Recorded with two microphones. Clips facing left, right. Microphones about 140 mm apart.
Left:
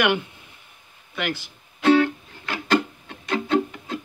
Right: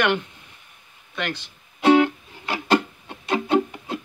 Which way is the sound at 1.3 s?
20° right (ahead or behind).